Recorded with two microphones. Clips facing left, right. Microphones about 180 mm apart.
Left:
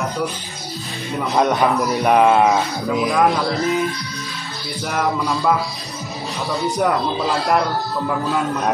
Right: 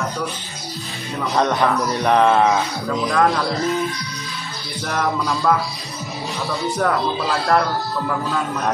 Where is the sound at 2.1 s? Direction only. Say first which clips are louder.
Left 1 dB; 15° left (ahead or behind).